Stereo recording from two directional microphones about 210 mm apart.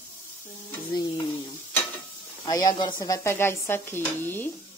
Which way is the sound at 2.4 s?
20° left (ahead or behind).